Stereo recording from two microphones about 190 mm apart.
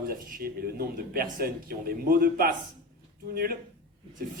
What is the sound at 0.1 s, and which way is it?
A man's voice, 55° right (ahead or behind).